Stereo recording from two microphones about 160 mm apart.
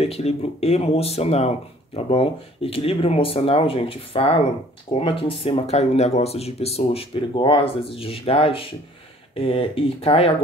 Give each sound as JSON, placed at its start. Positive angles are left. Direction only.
{"t": 0.0, "sound": "speech", "side_deg": 40}